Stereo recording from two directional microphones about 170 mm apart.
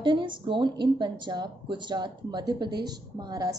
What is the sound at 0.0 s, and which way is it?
A woman's voice, 30° right (ahead or behind).